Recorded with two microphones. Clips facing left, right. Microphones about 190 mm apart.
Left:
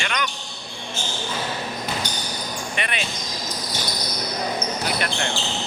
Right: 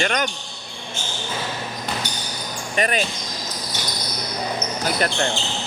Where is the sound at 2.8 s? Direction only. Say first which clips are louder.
Right 9 dB; 40° right (ahead or behind).